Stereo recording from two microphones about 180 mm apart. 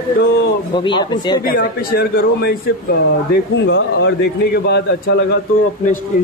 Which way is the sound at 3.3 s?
80° left.